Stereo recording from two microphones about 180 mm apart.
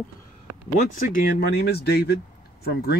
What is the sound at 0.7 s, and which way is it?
Speech, 45° left (ahead or behind).